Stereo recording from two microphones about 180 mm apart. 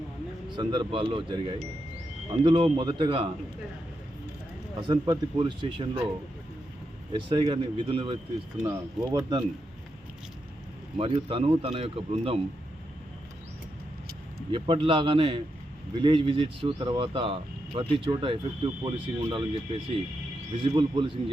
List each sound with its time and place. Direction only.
0.5 s speech: 25° right (ahead or behind)
4.8 s speech: 25° right (ahead or behind)
7.1 s speech: 30° right (ahead or behind)
8.6 s speech: 20° right (ahead or behind)
10.9 s speech: 30° right (ahead or behind)
14.5 s speech: 30° right (ahead or behind)